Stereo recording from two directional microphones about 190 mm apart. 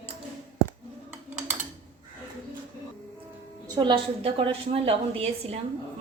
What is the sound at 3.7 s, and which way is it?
A woman's voice, 25° right (ahead or behind).